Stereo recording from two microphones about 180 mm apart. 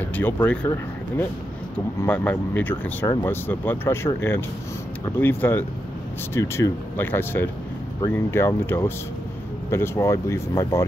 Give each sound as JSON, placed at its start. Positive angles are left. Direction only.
{"t": 0.0, "sound": "speech", "side_deg": 10}